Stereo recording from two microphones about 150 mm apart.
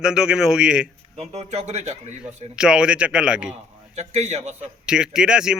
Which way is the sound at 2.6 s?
5° right (ahead or behind).